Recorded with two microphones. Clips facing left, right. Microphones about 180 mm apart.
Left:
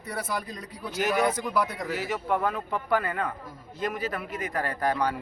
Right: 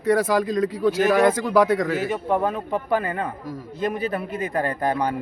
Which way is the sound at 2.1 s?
30° right (ahead or behind).